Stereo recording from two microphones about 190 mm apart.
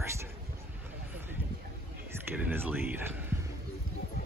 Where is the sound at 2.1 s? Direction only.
10° right (ahead or behind).